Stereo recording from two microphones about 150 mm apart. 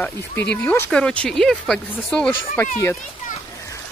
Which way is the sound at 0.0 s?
10° left (ahead or behind).